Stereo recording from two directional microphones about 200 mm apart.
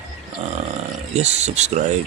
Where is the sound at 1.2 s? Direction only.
35° right (ahead or behind).